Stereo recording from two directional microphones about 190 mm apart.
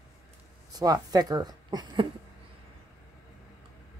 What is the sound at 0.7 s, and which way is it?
A woman's voice, 20° right (ahead or behind).